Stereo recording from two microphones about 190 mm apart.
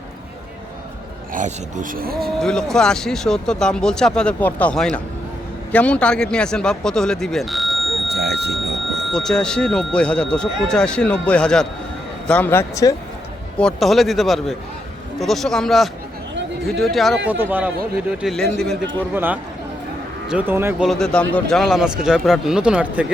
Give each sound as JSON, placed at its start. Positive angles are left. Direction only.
{"t": 1.3, "sound": "speech", "side_deg": -45}
{"t": 2.1, "sound": "speech", "side_deg": 0}
{"t": 8.1, "sound": "a sound", "side_deg": -60}
{"t": 9.1, "sound": "speech", "side_deg": 5}
{"t": 13.6, "sound": "speech", "side_deg": 0}
{"t": 17.2, "sound": "speech", "side_deg": -10}
{"t": 18.2, "sound": "speech", "side_deg": 0}
{"t": 19.1, "sound": "speech", "side_deg": -10}
{"t": 20.8, "sound": "speech", "side_deg": 0}